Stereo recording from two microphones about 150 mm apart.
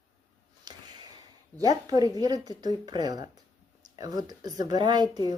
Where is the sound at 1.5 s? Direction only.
25° right (ahead or behind).